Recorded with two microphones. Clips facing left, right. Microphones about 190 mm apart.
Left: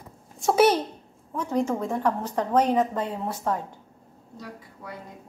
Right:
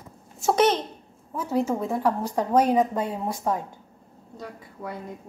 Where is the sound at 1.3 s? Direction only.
5° right (ahead or behind).